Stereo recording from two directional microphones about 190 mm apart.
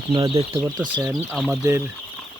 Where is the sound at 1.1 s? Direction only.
Centre (ahead or behind).